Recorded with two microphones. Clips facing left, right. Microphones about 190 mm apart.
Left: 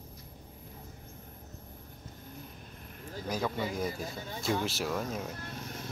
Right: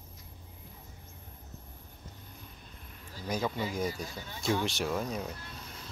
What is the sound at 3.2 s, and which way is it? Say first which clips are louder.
Speech: even; centre (ahead or behind).